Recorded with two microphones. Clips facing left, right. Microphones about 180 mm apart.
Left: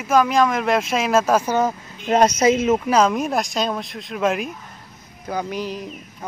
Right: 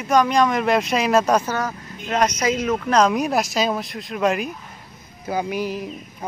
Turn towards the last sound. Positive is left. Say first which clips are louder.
# right 2 dB
turn(degrees=-10)  # may be behind; listen again after turning